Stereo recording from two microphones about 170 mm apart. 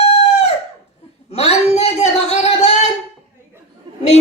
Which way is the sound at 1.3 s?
40° left (ahead or behind).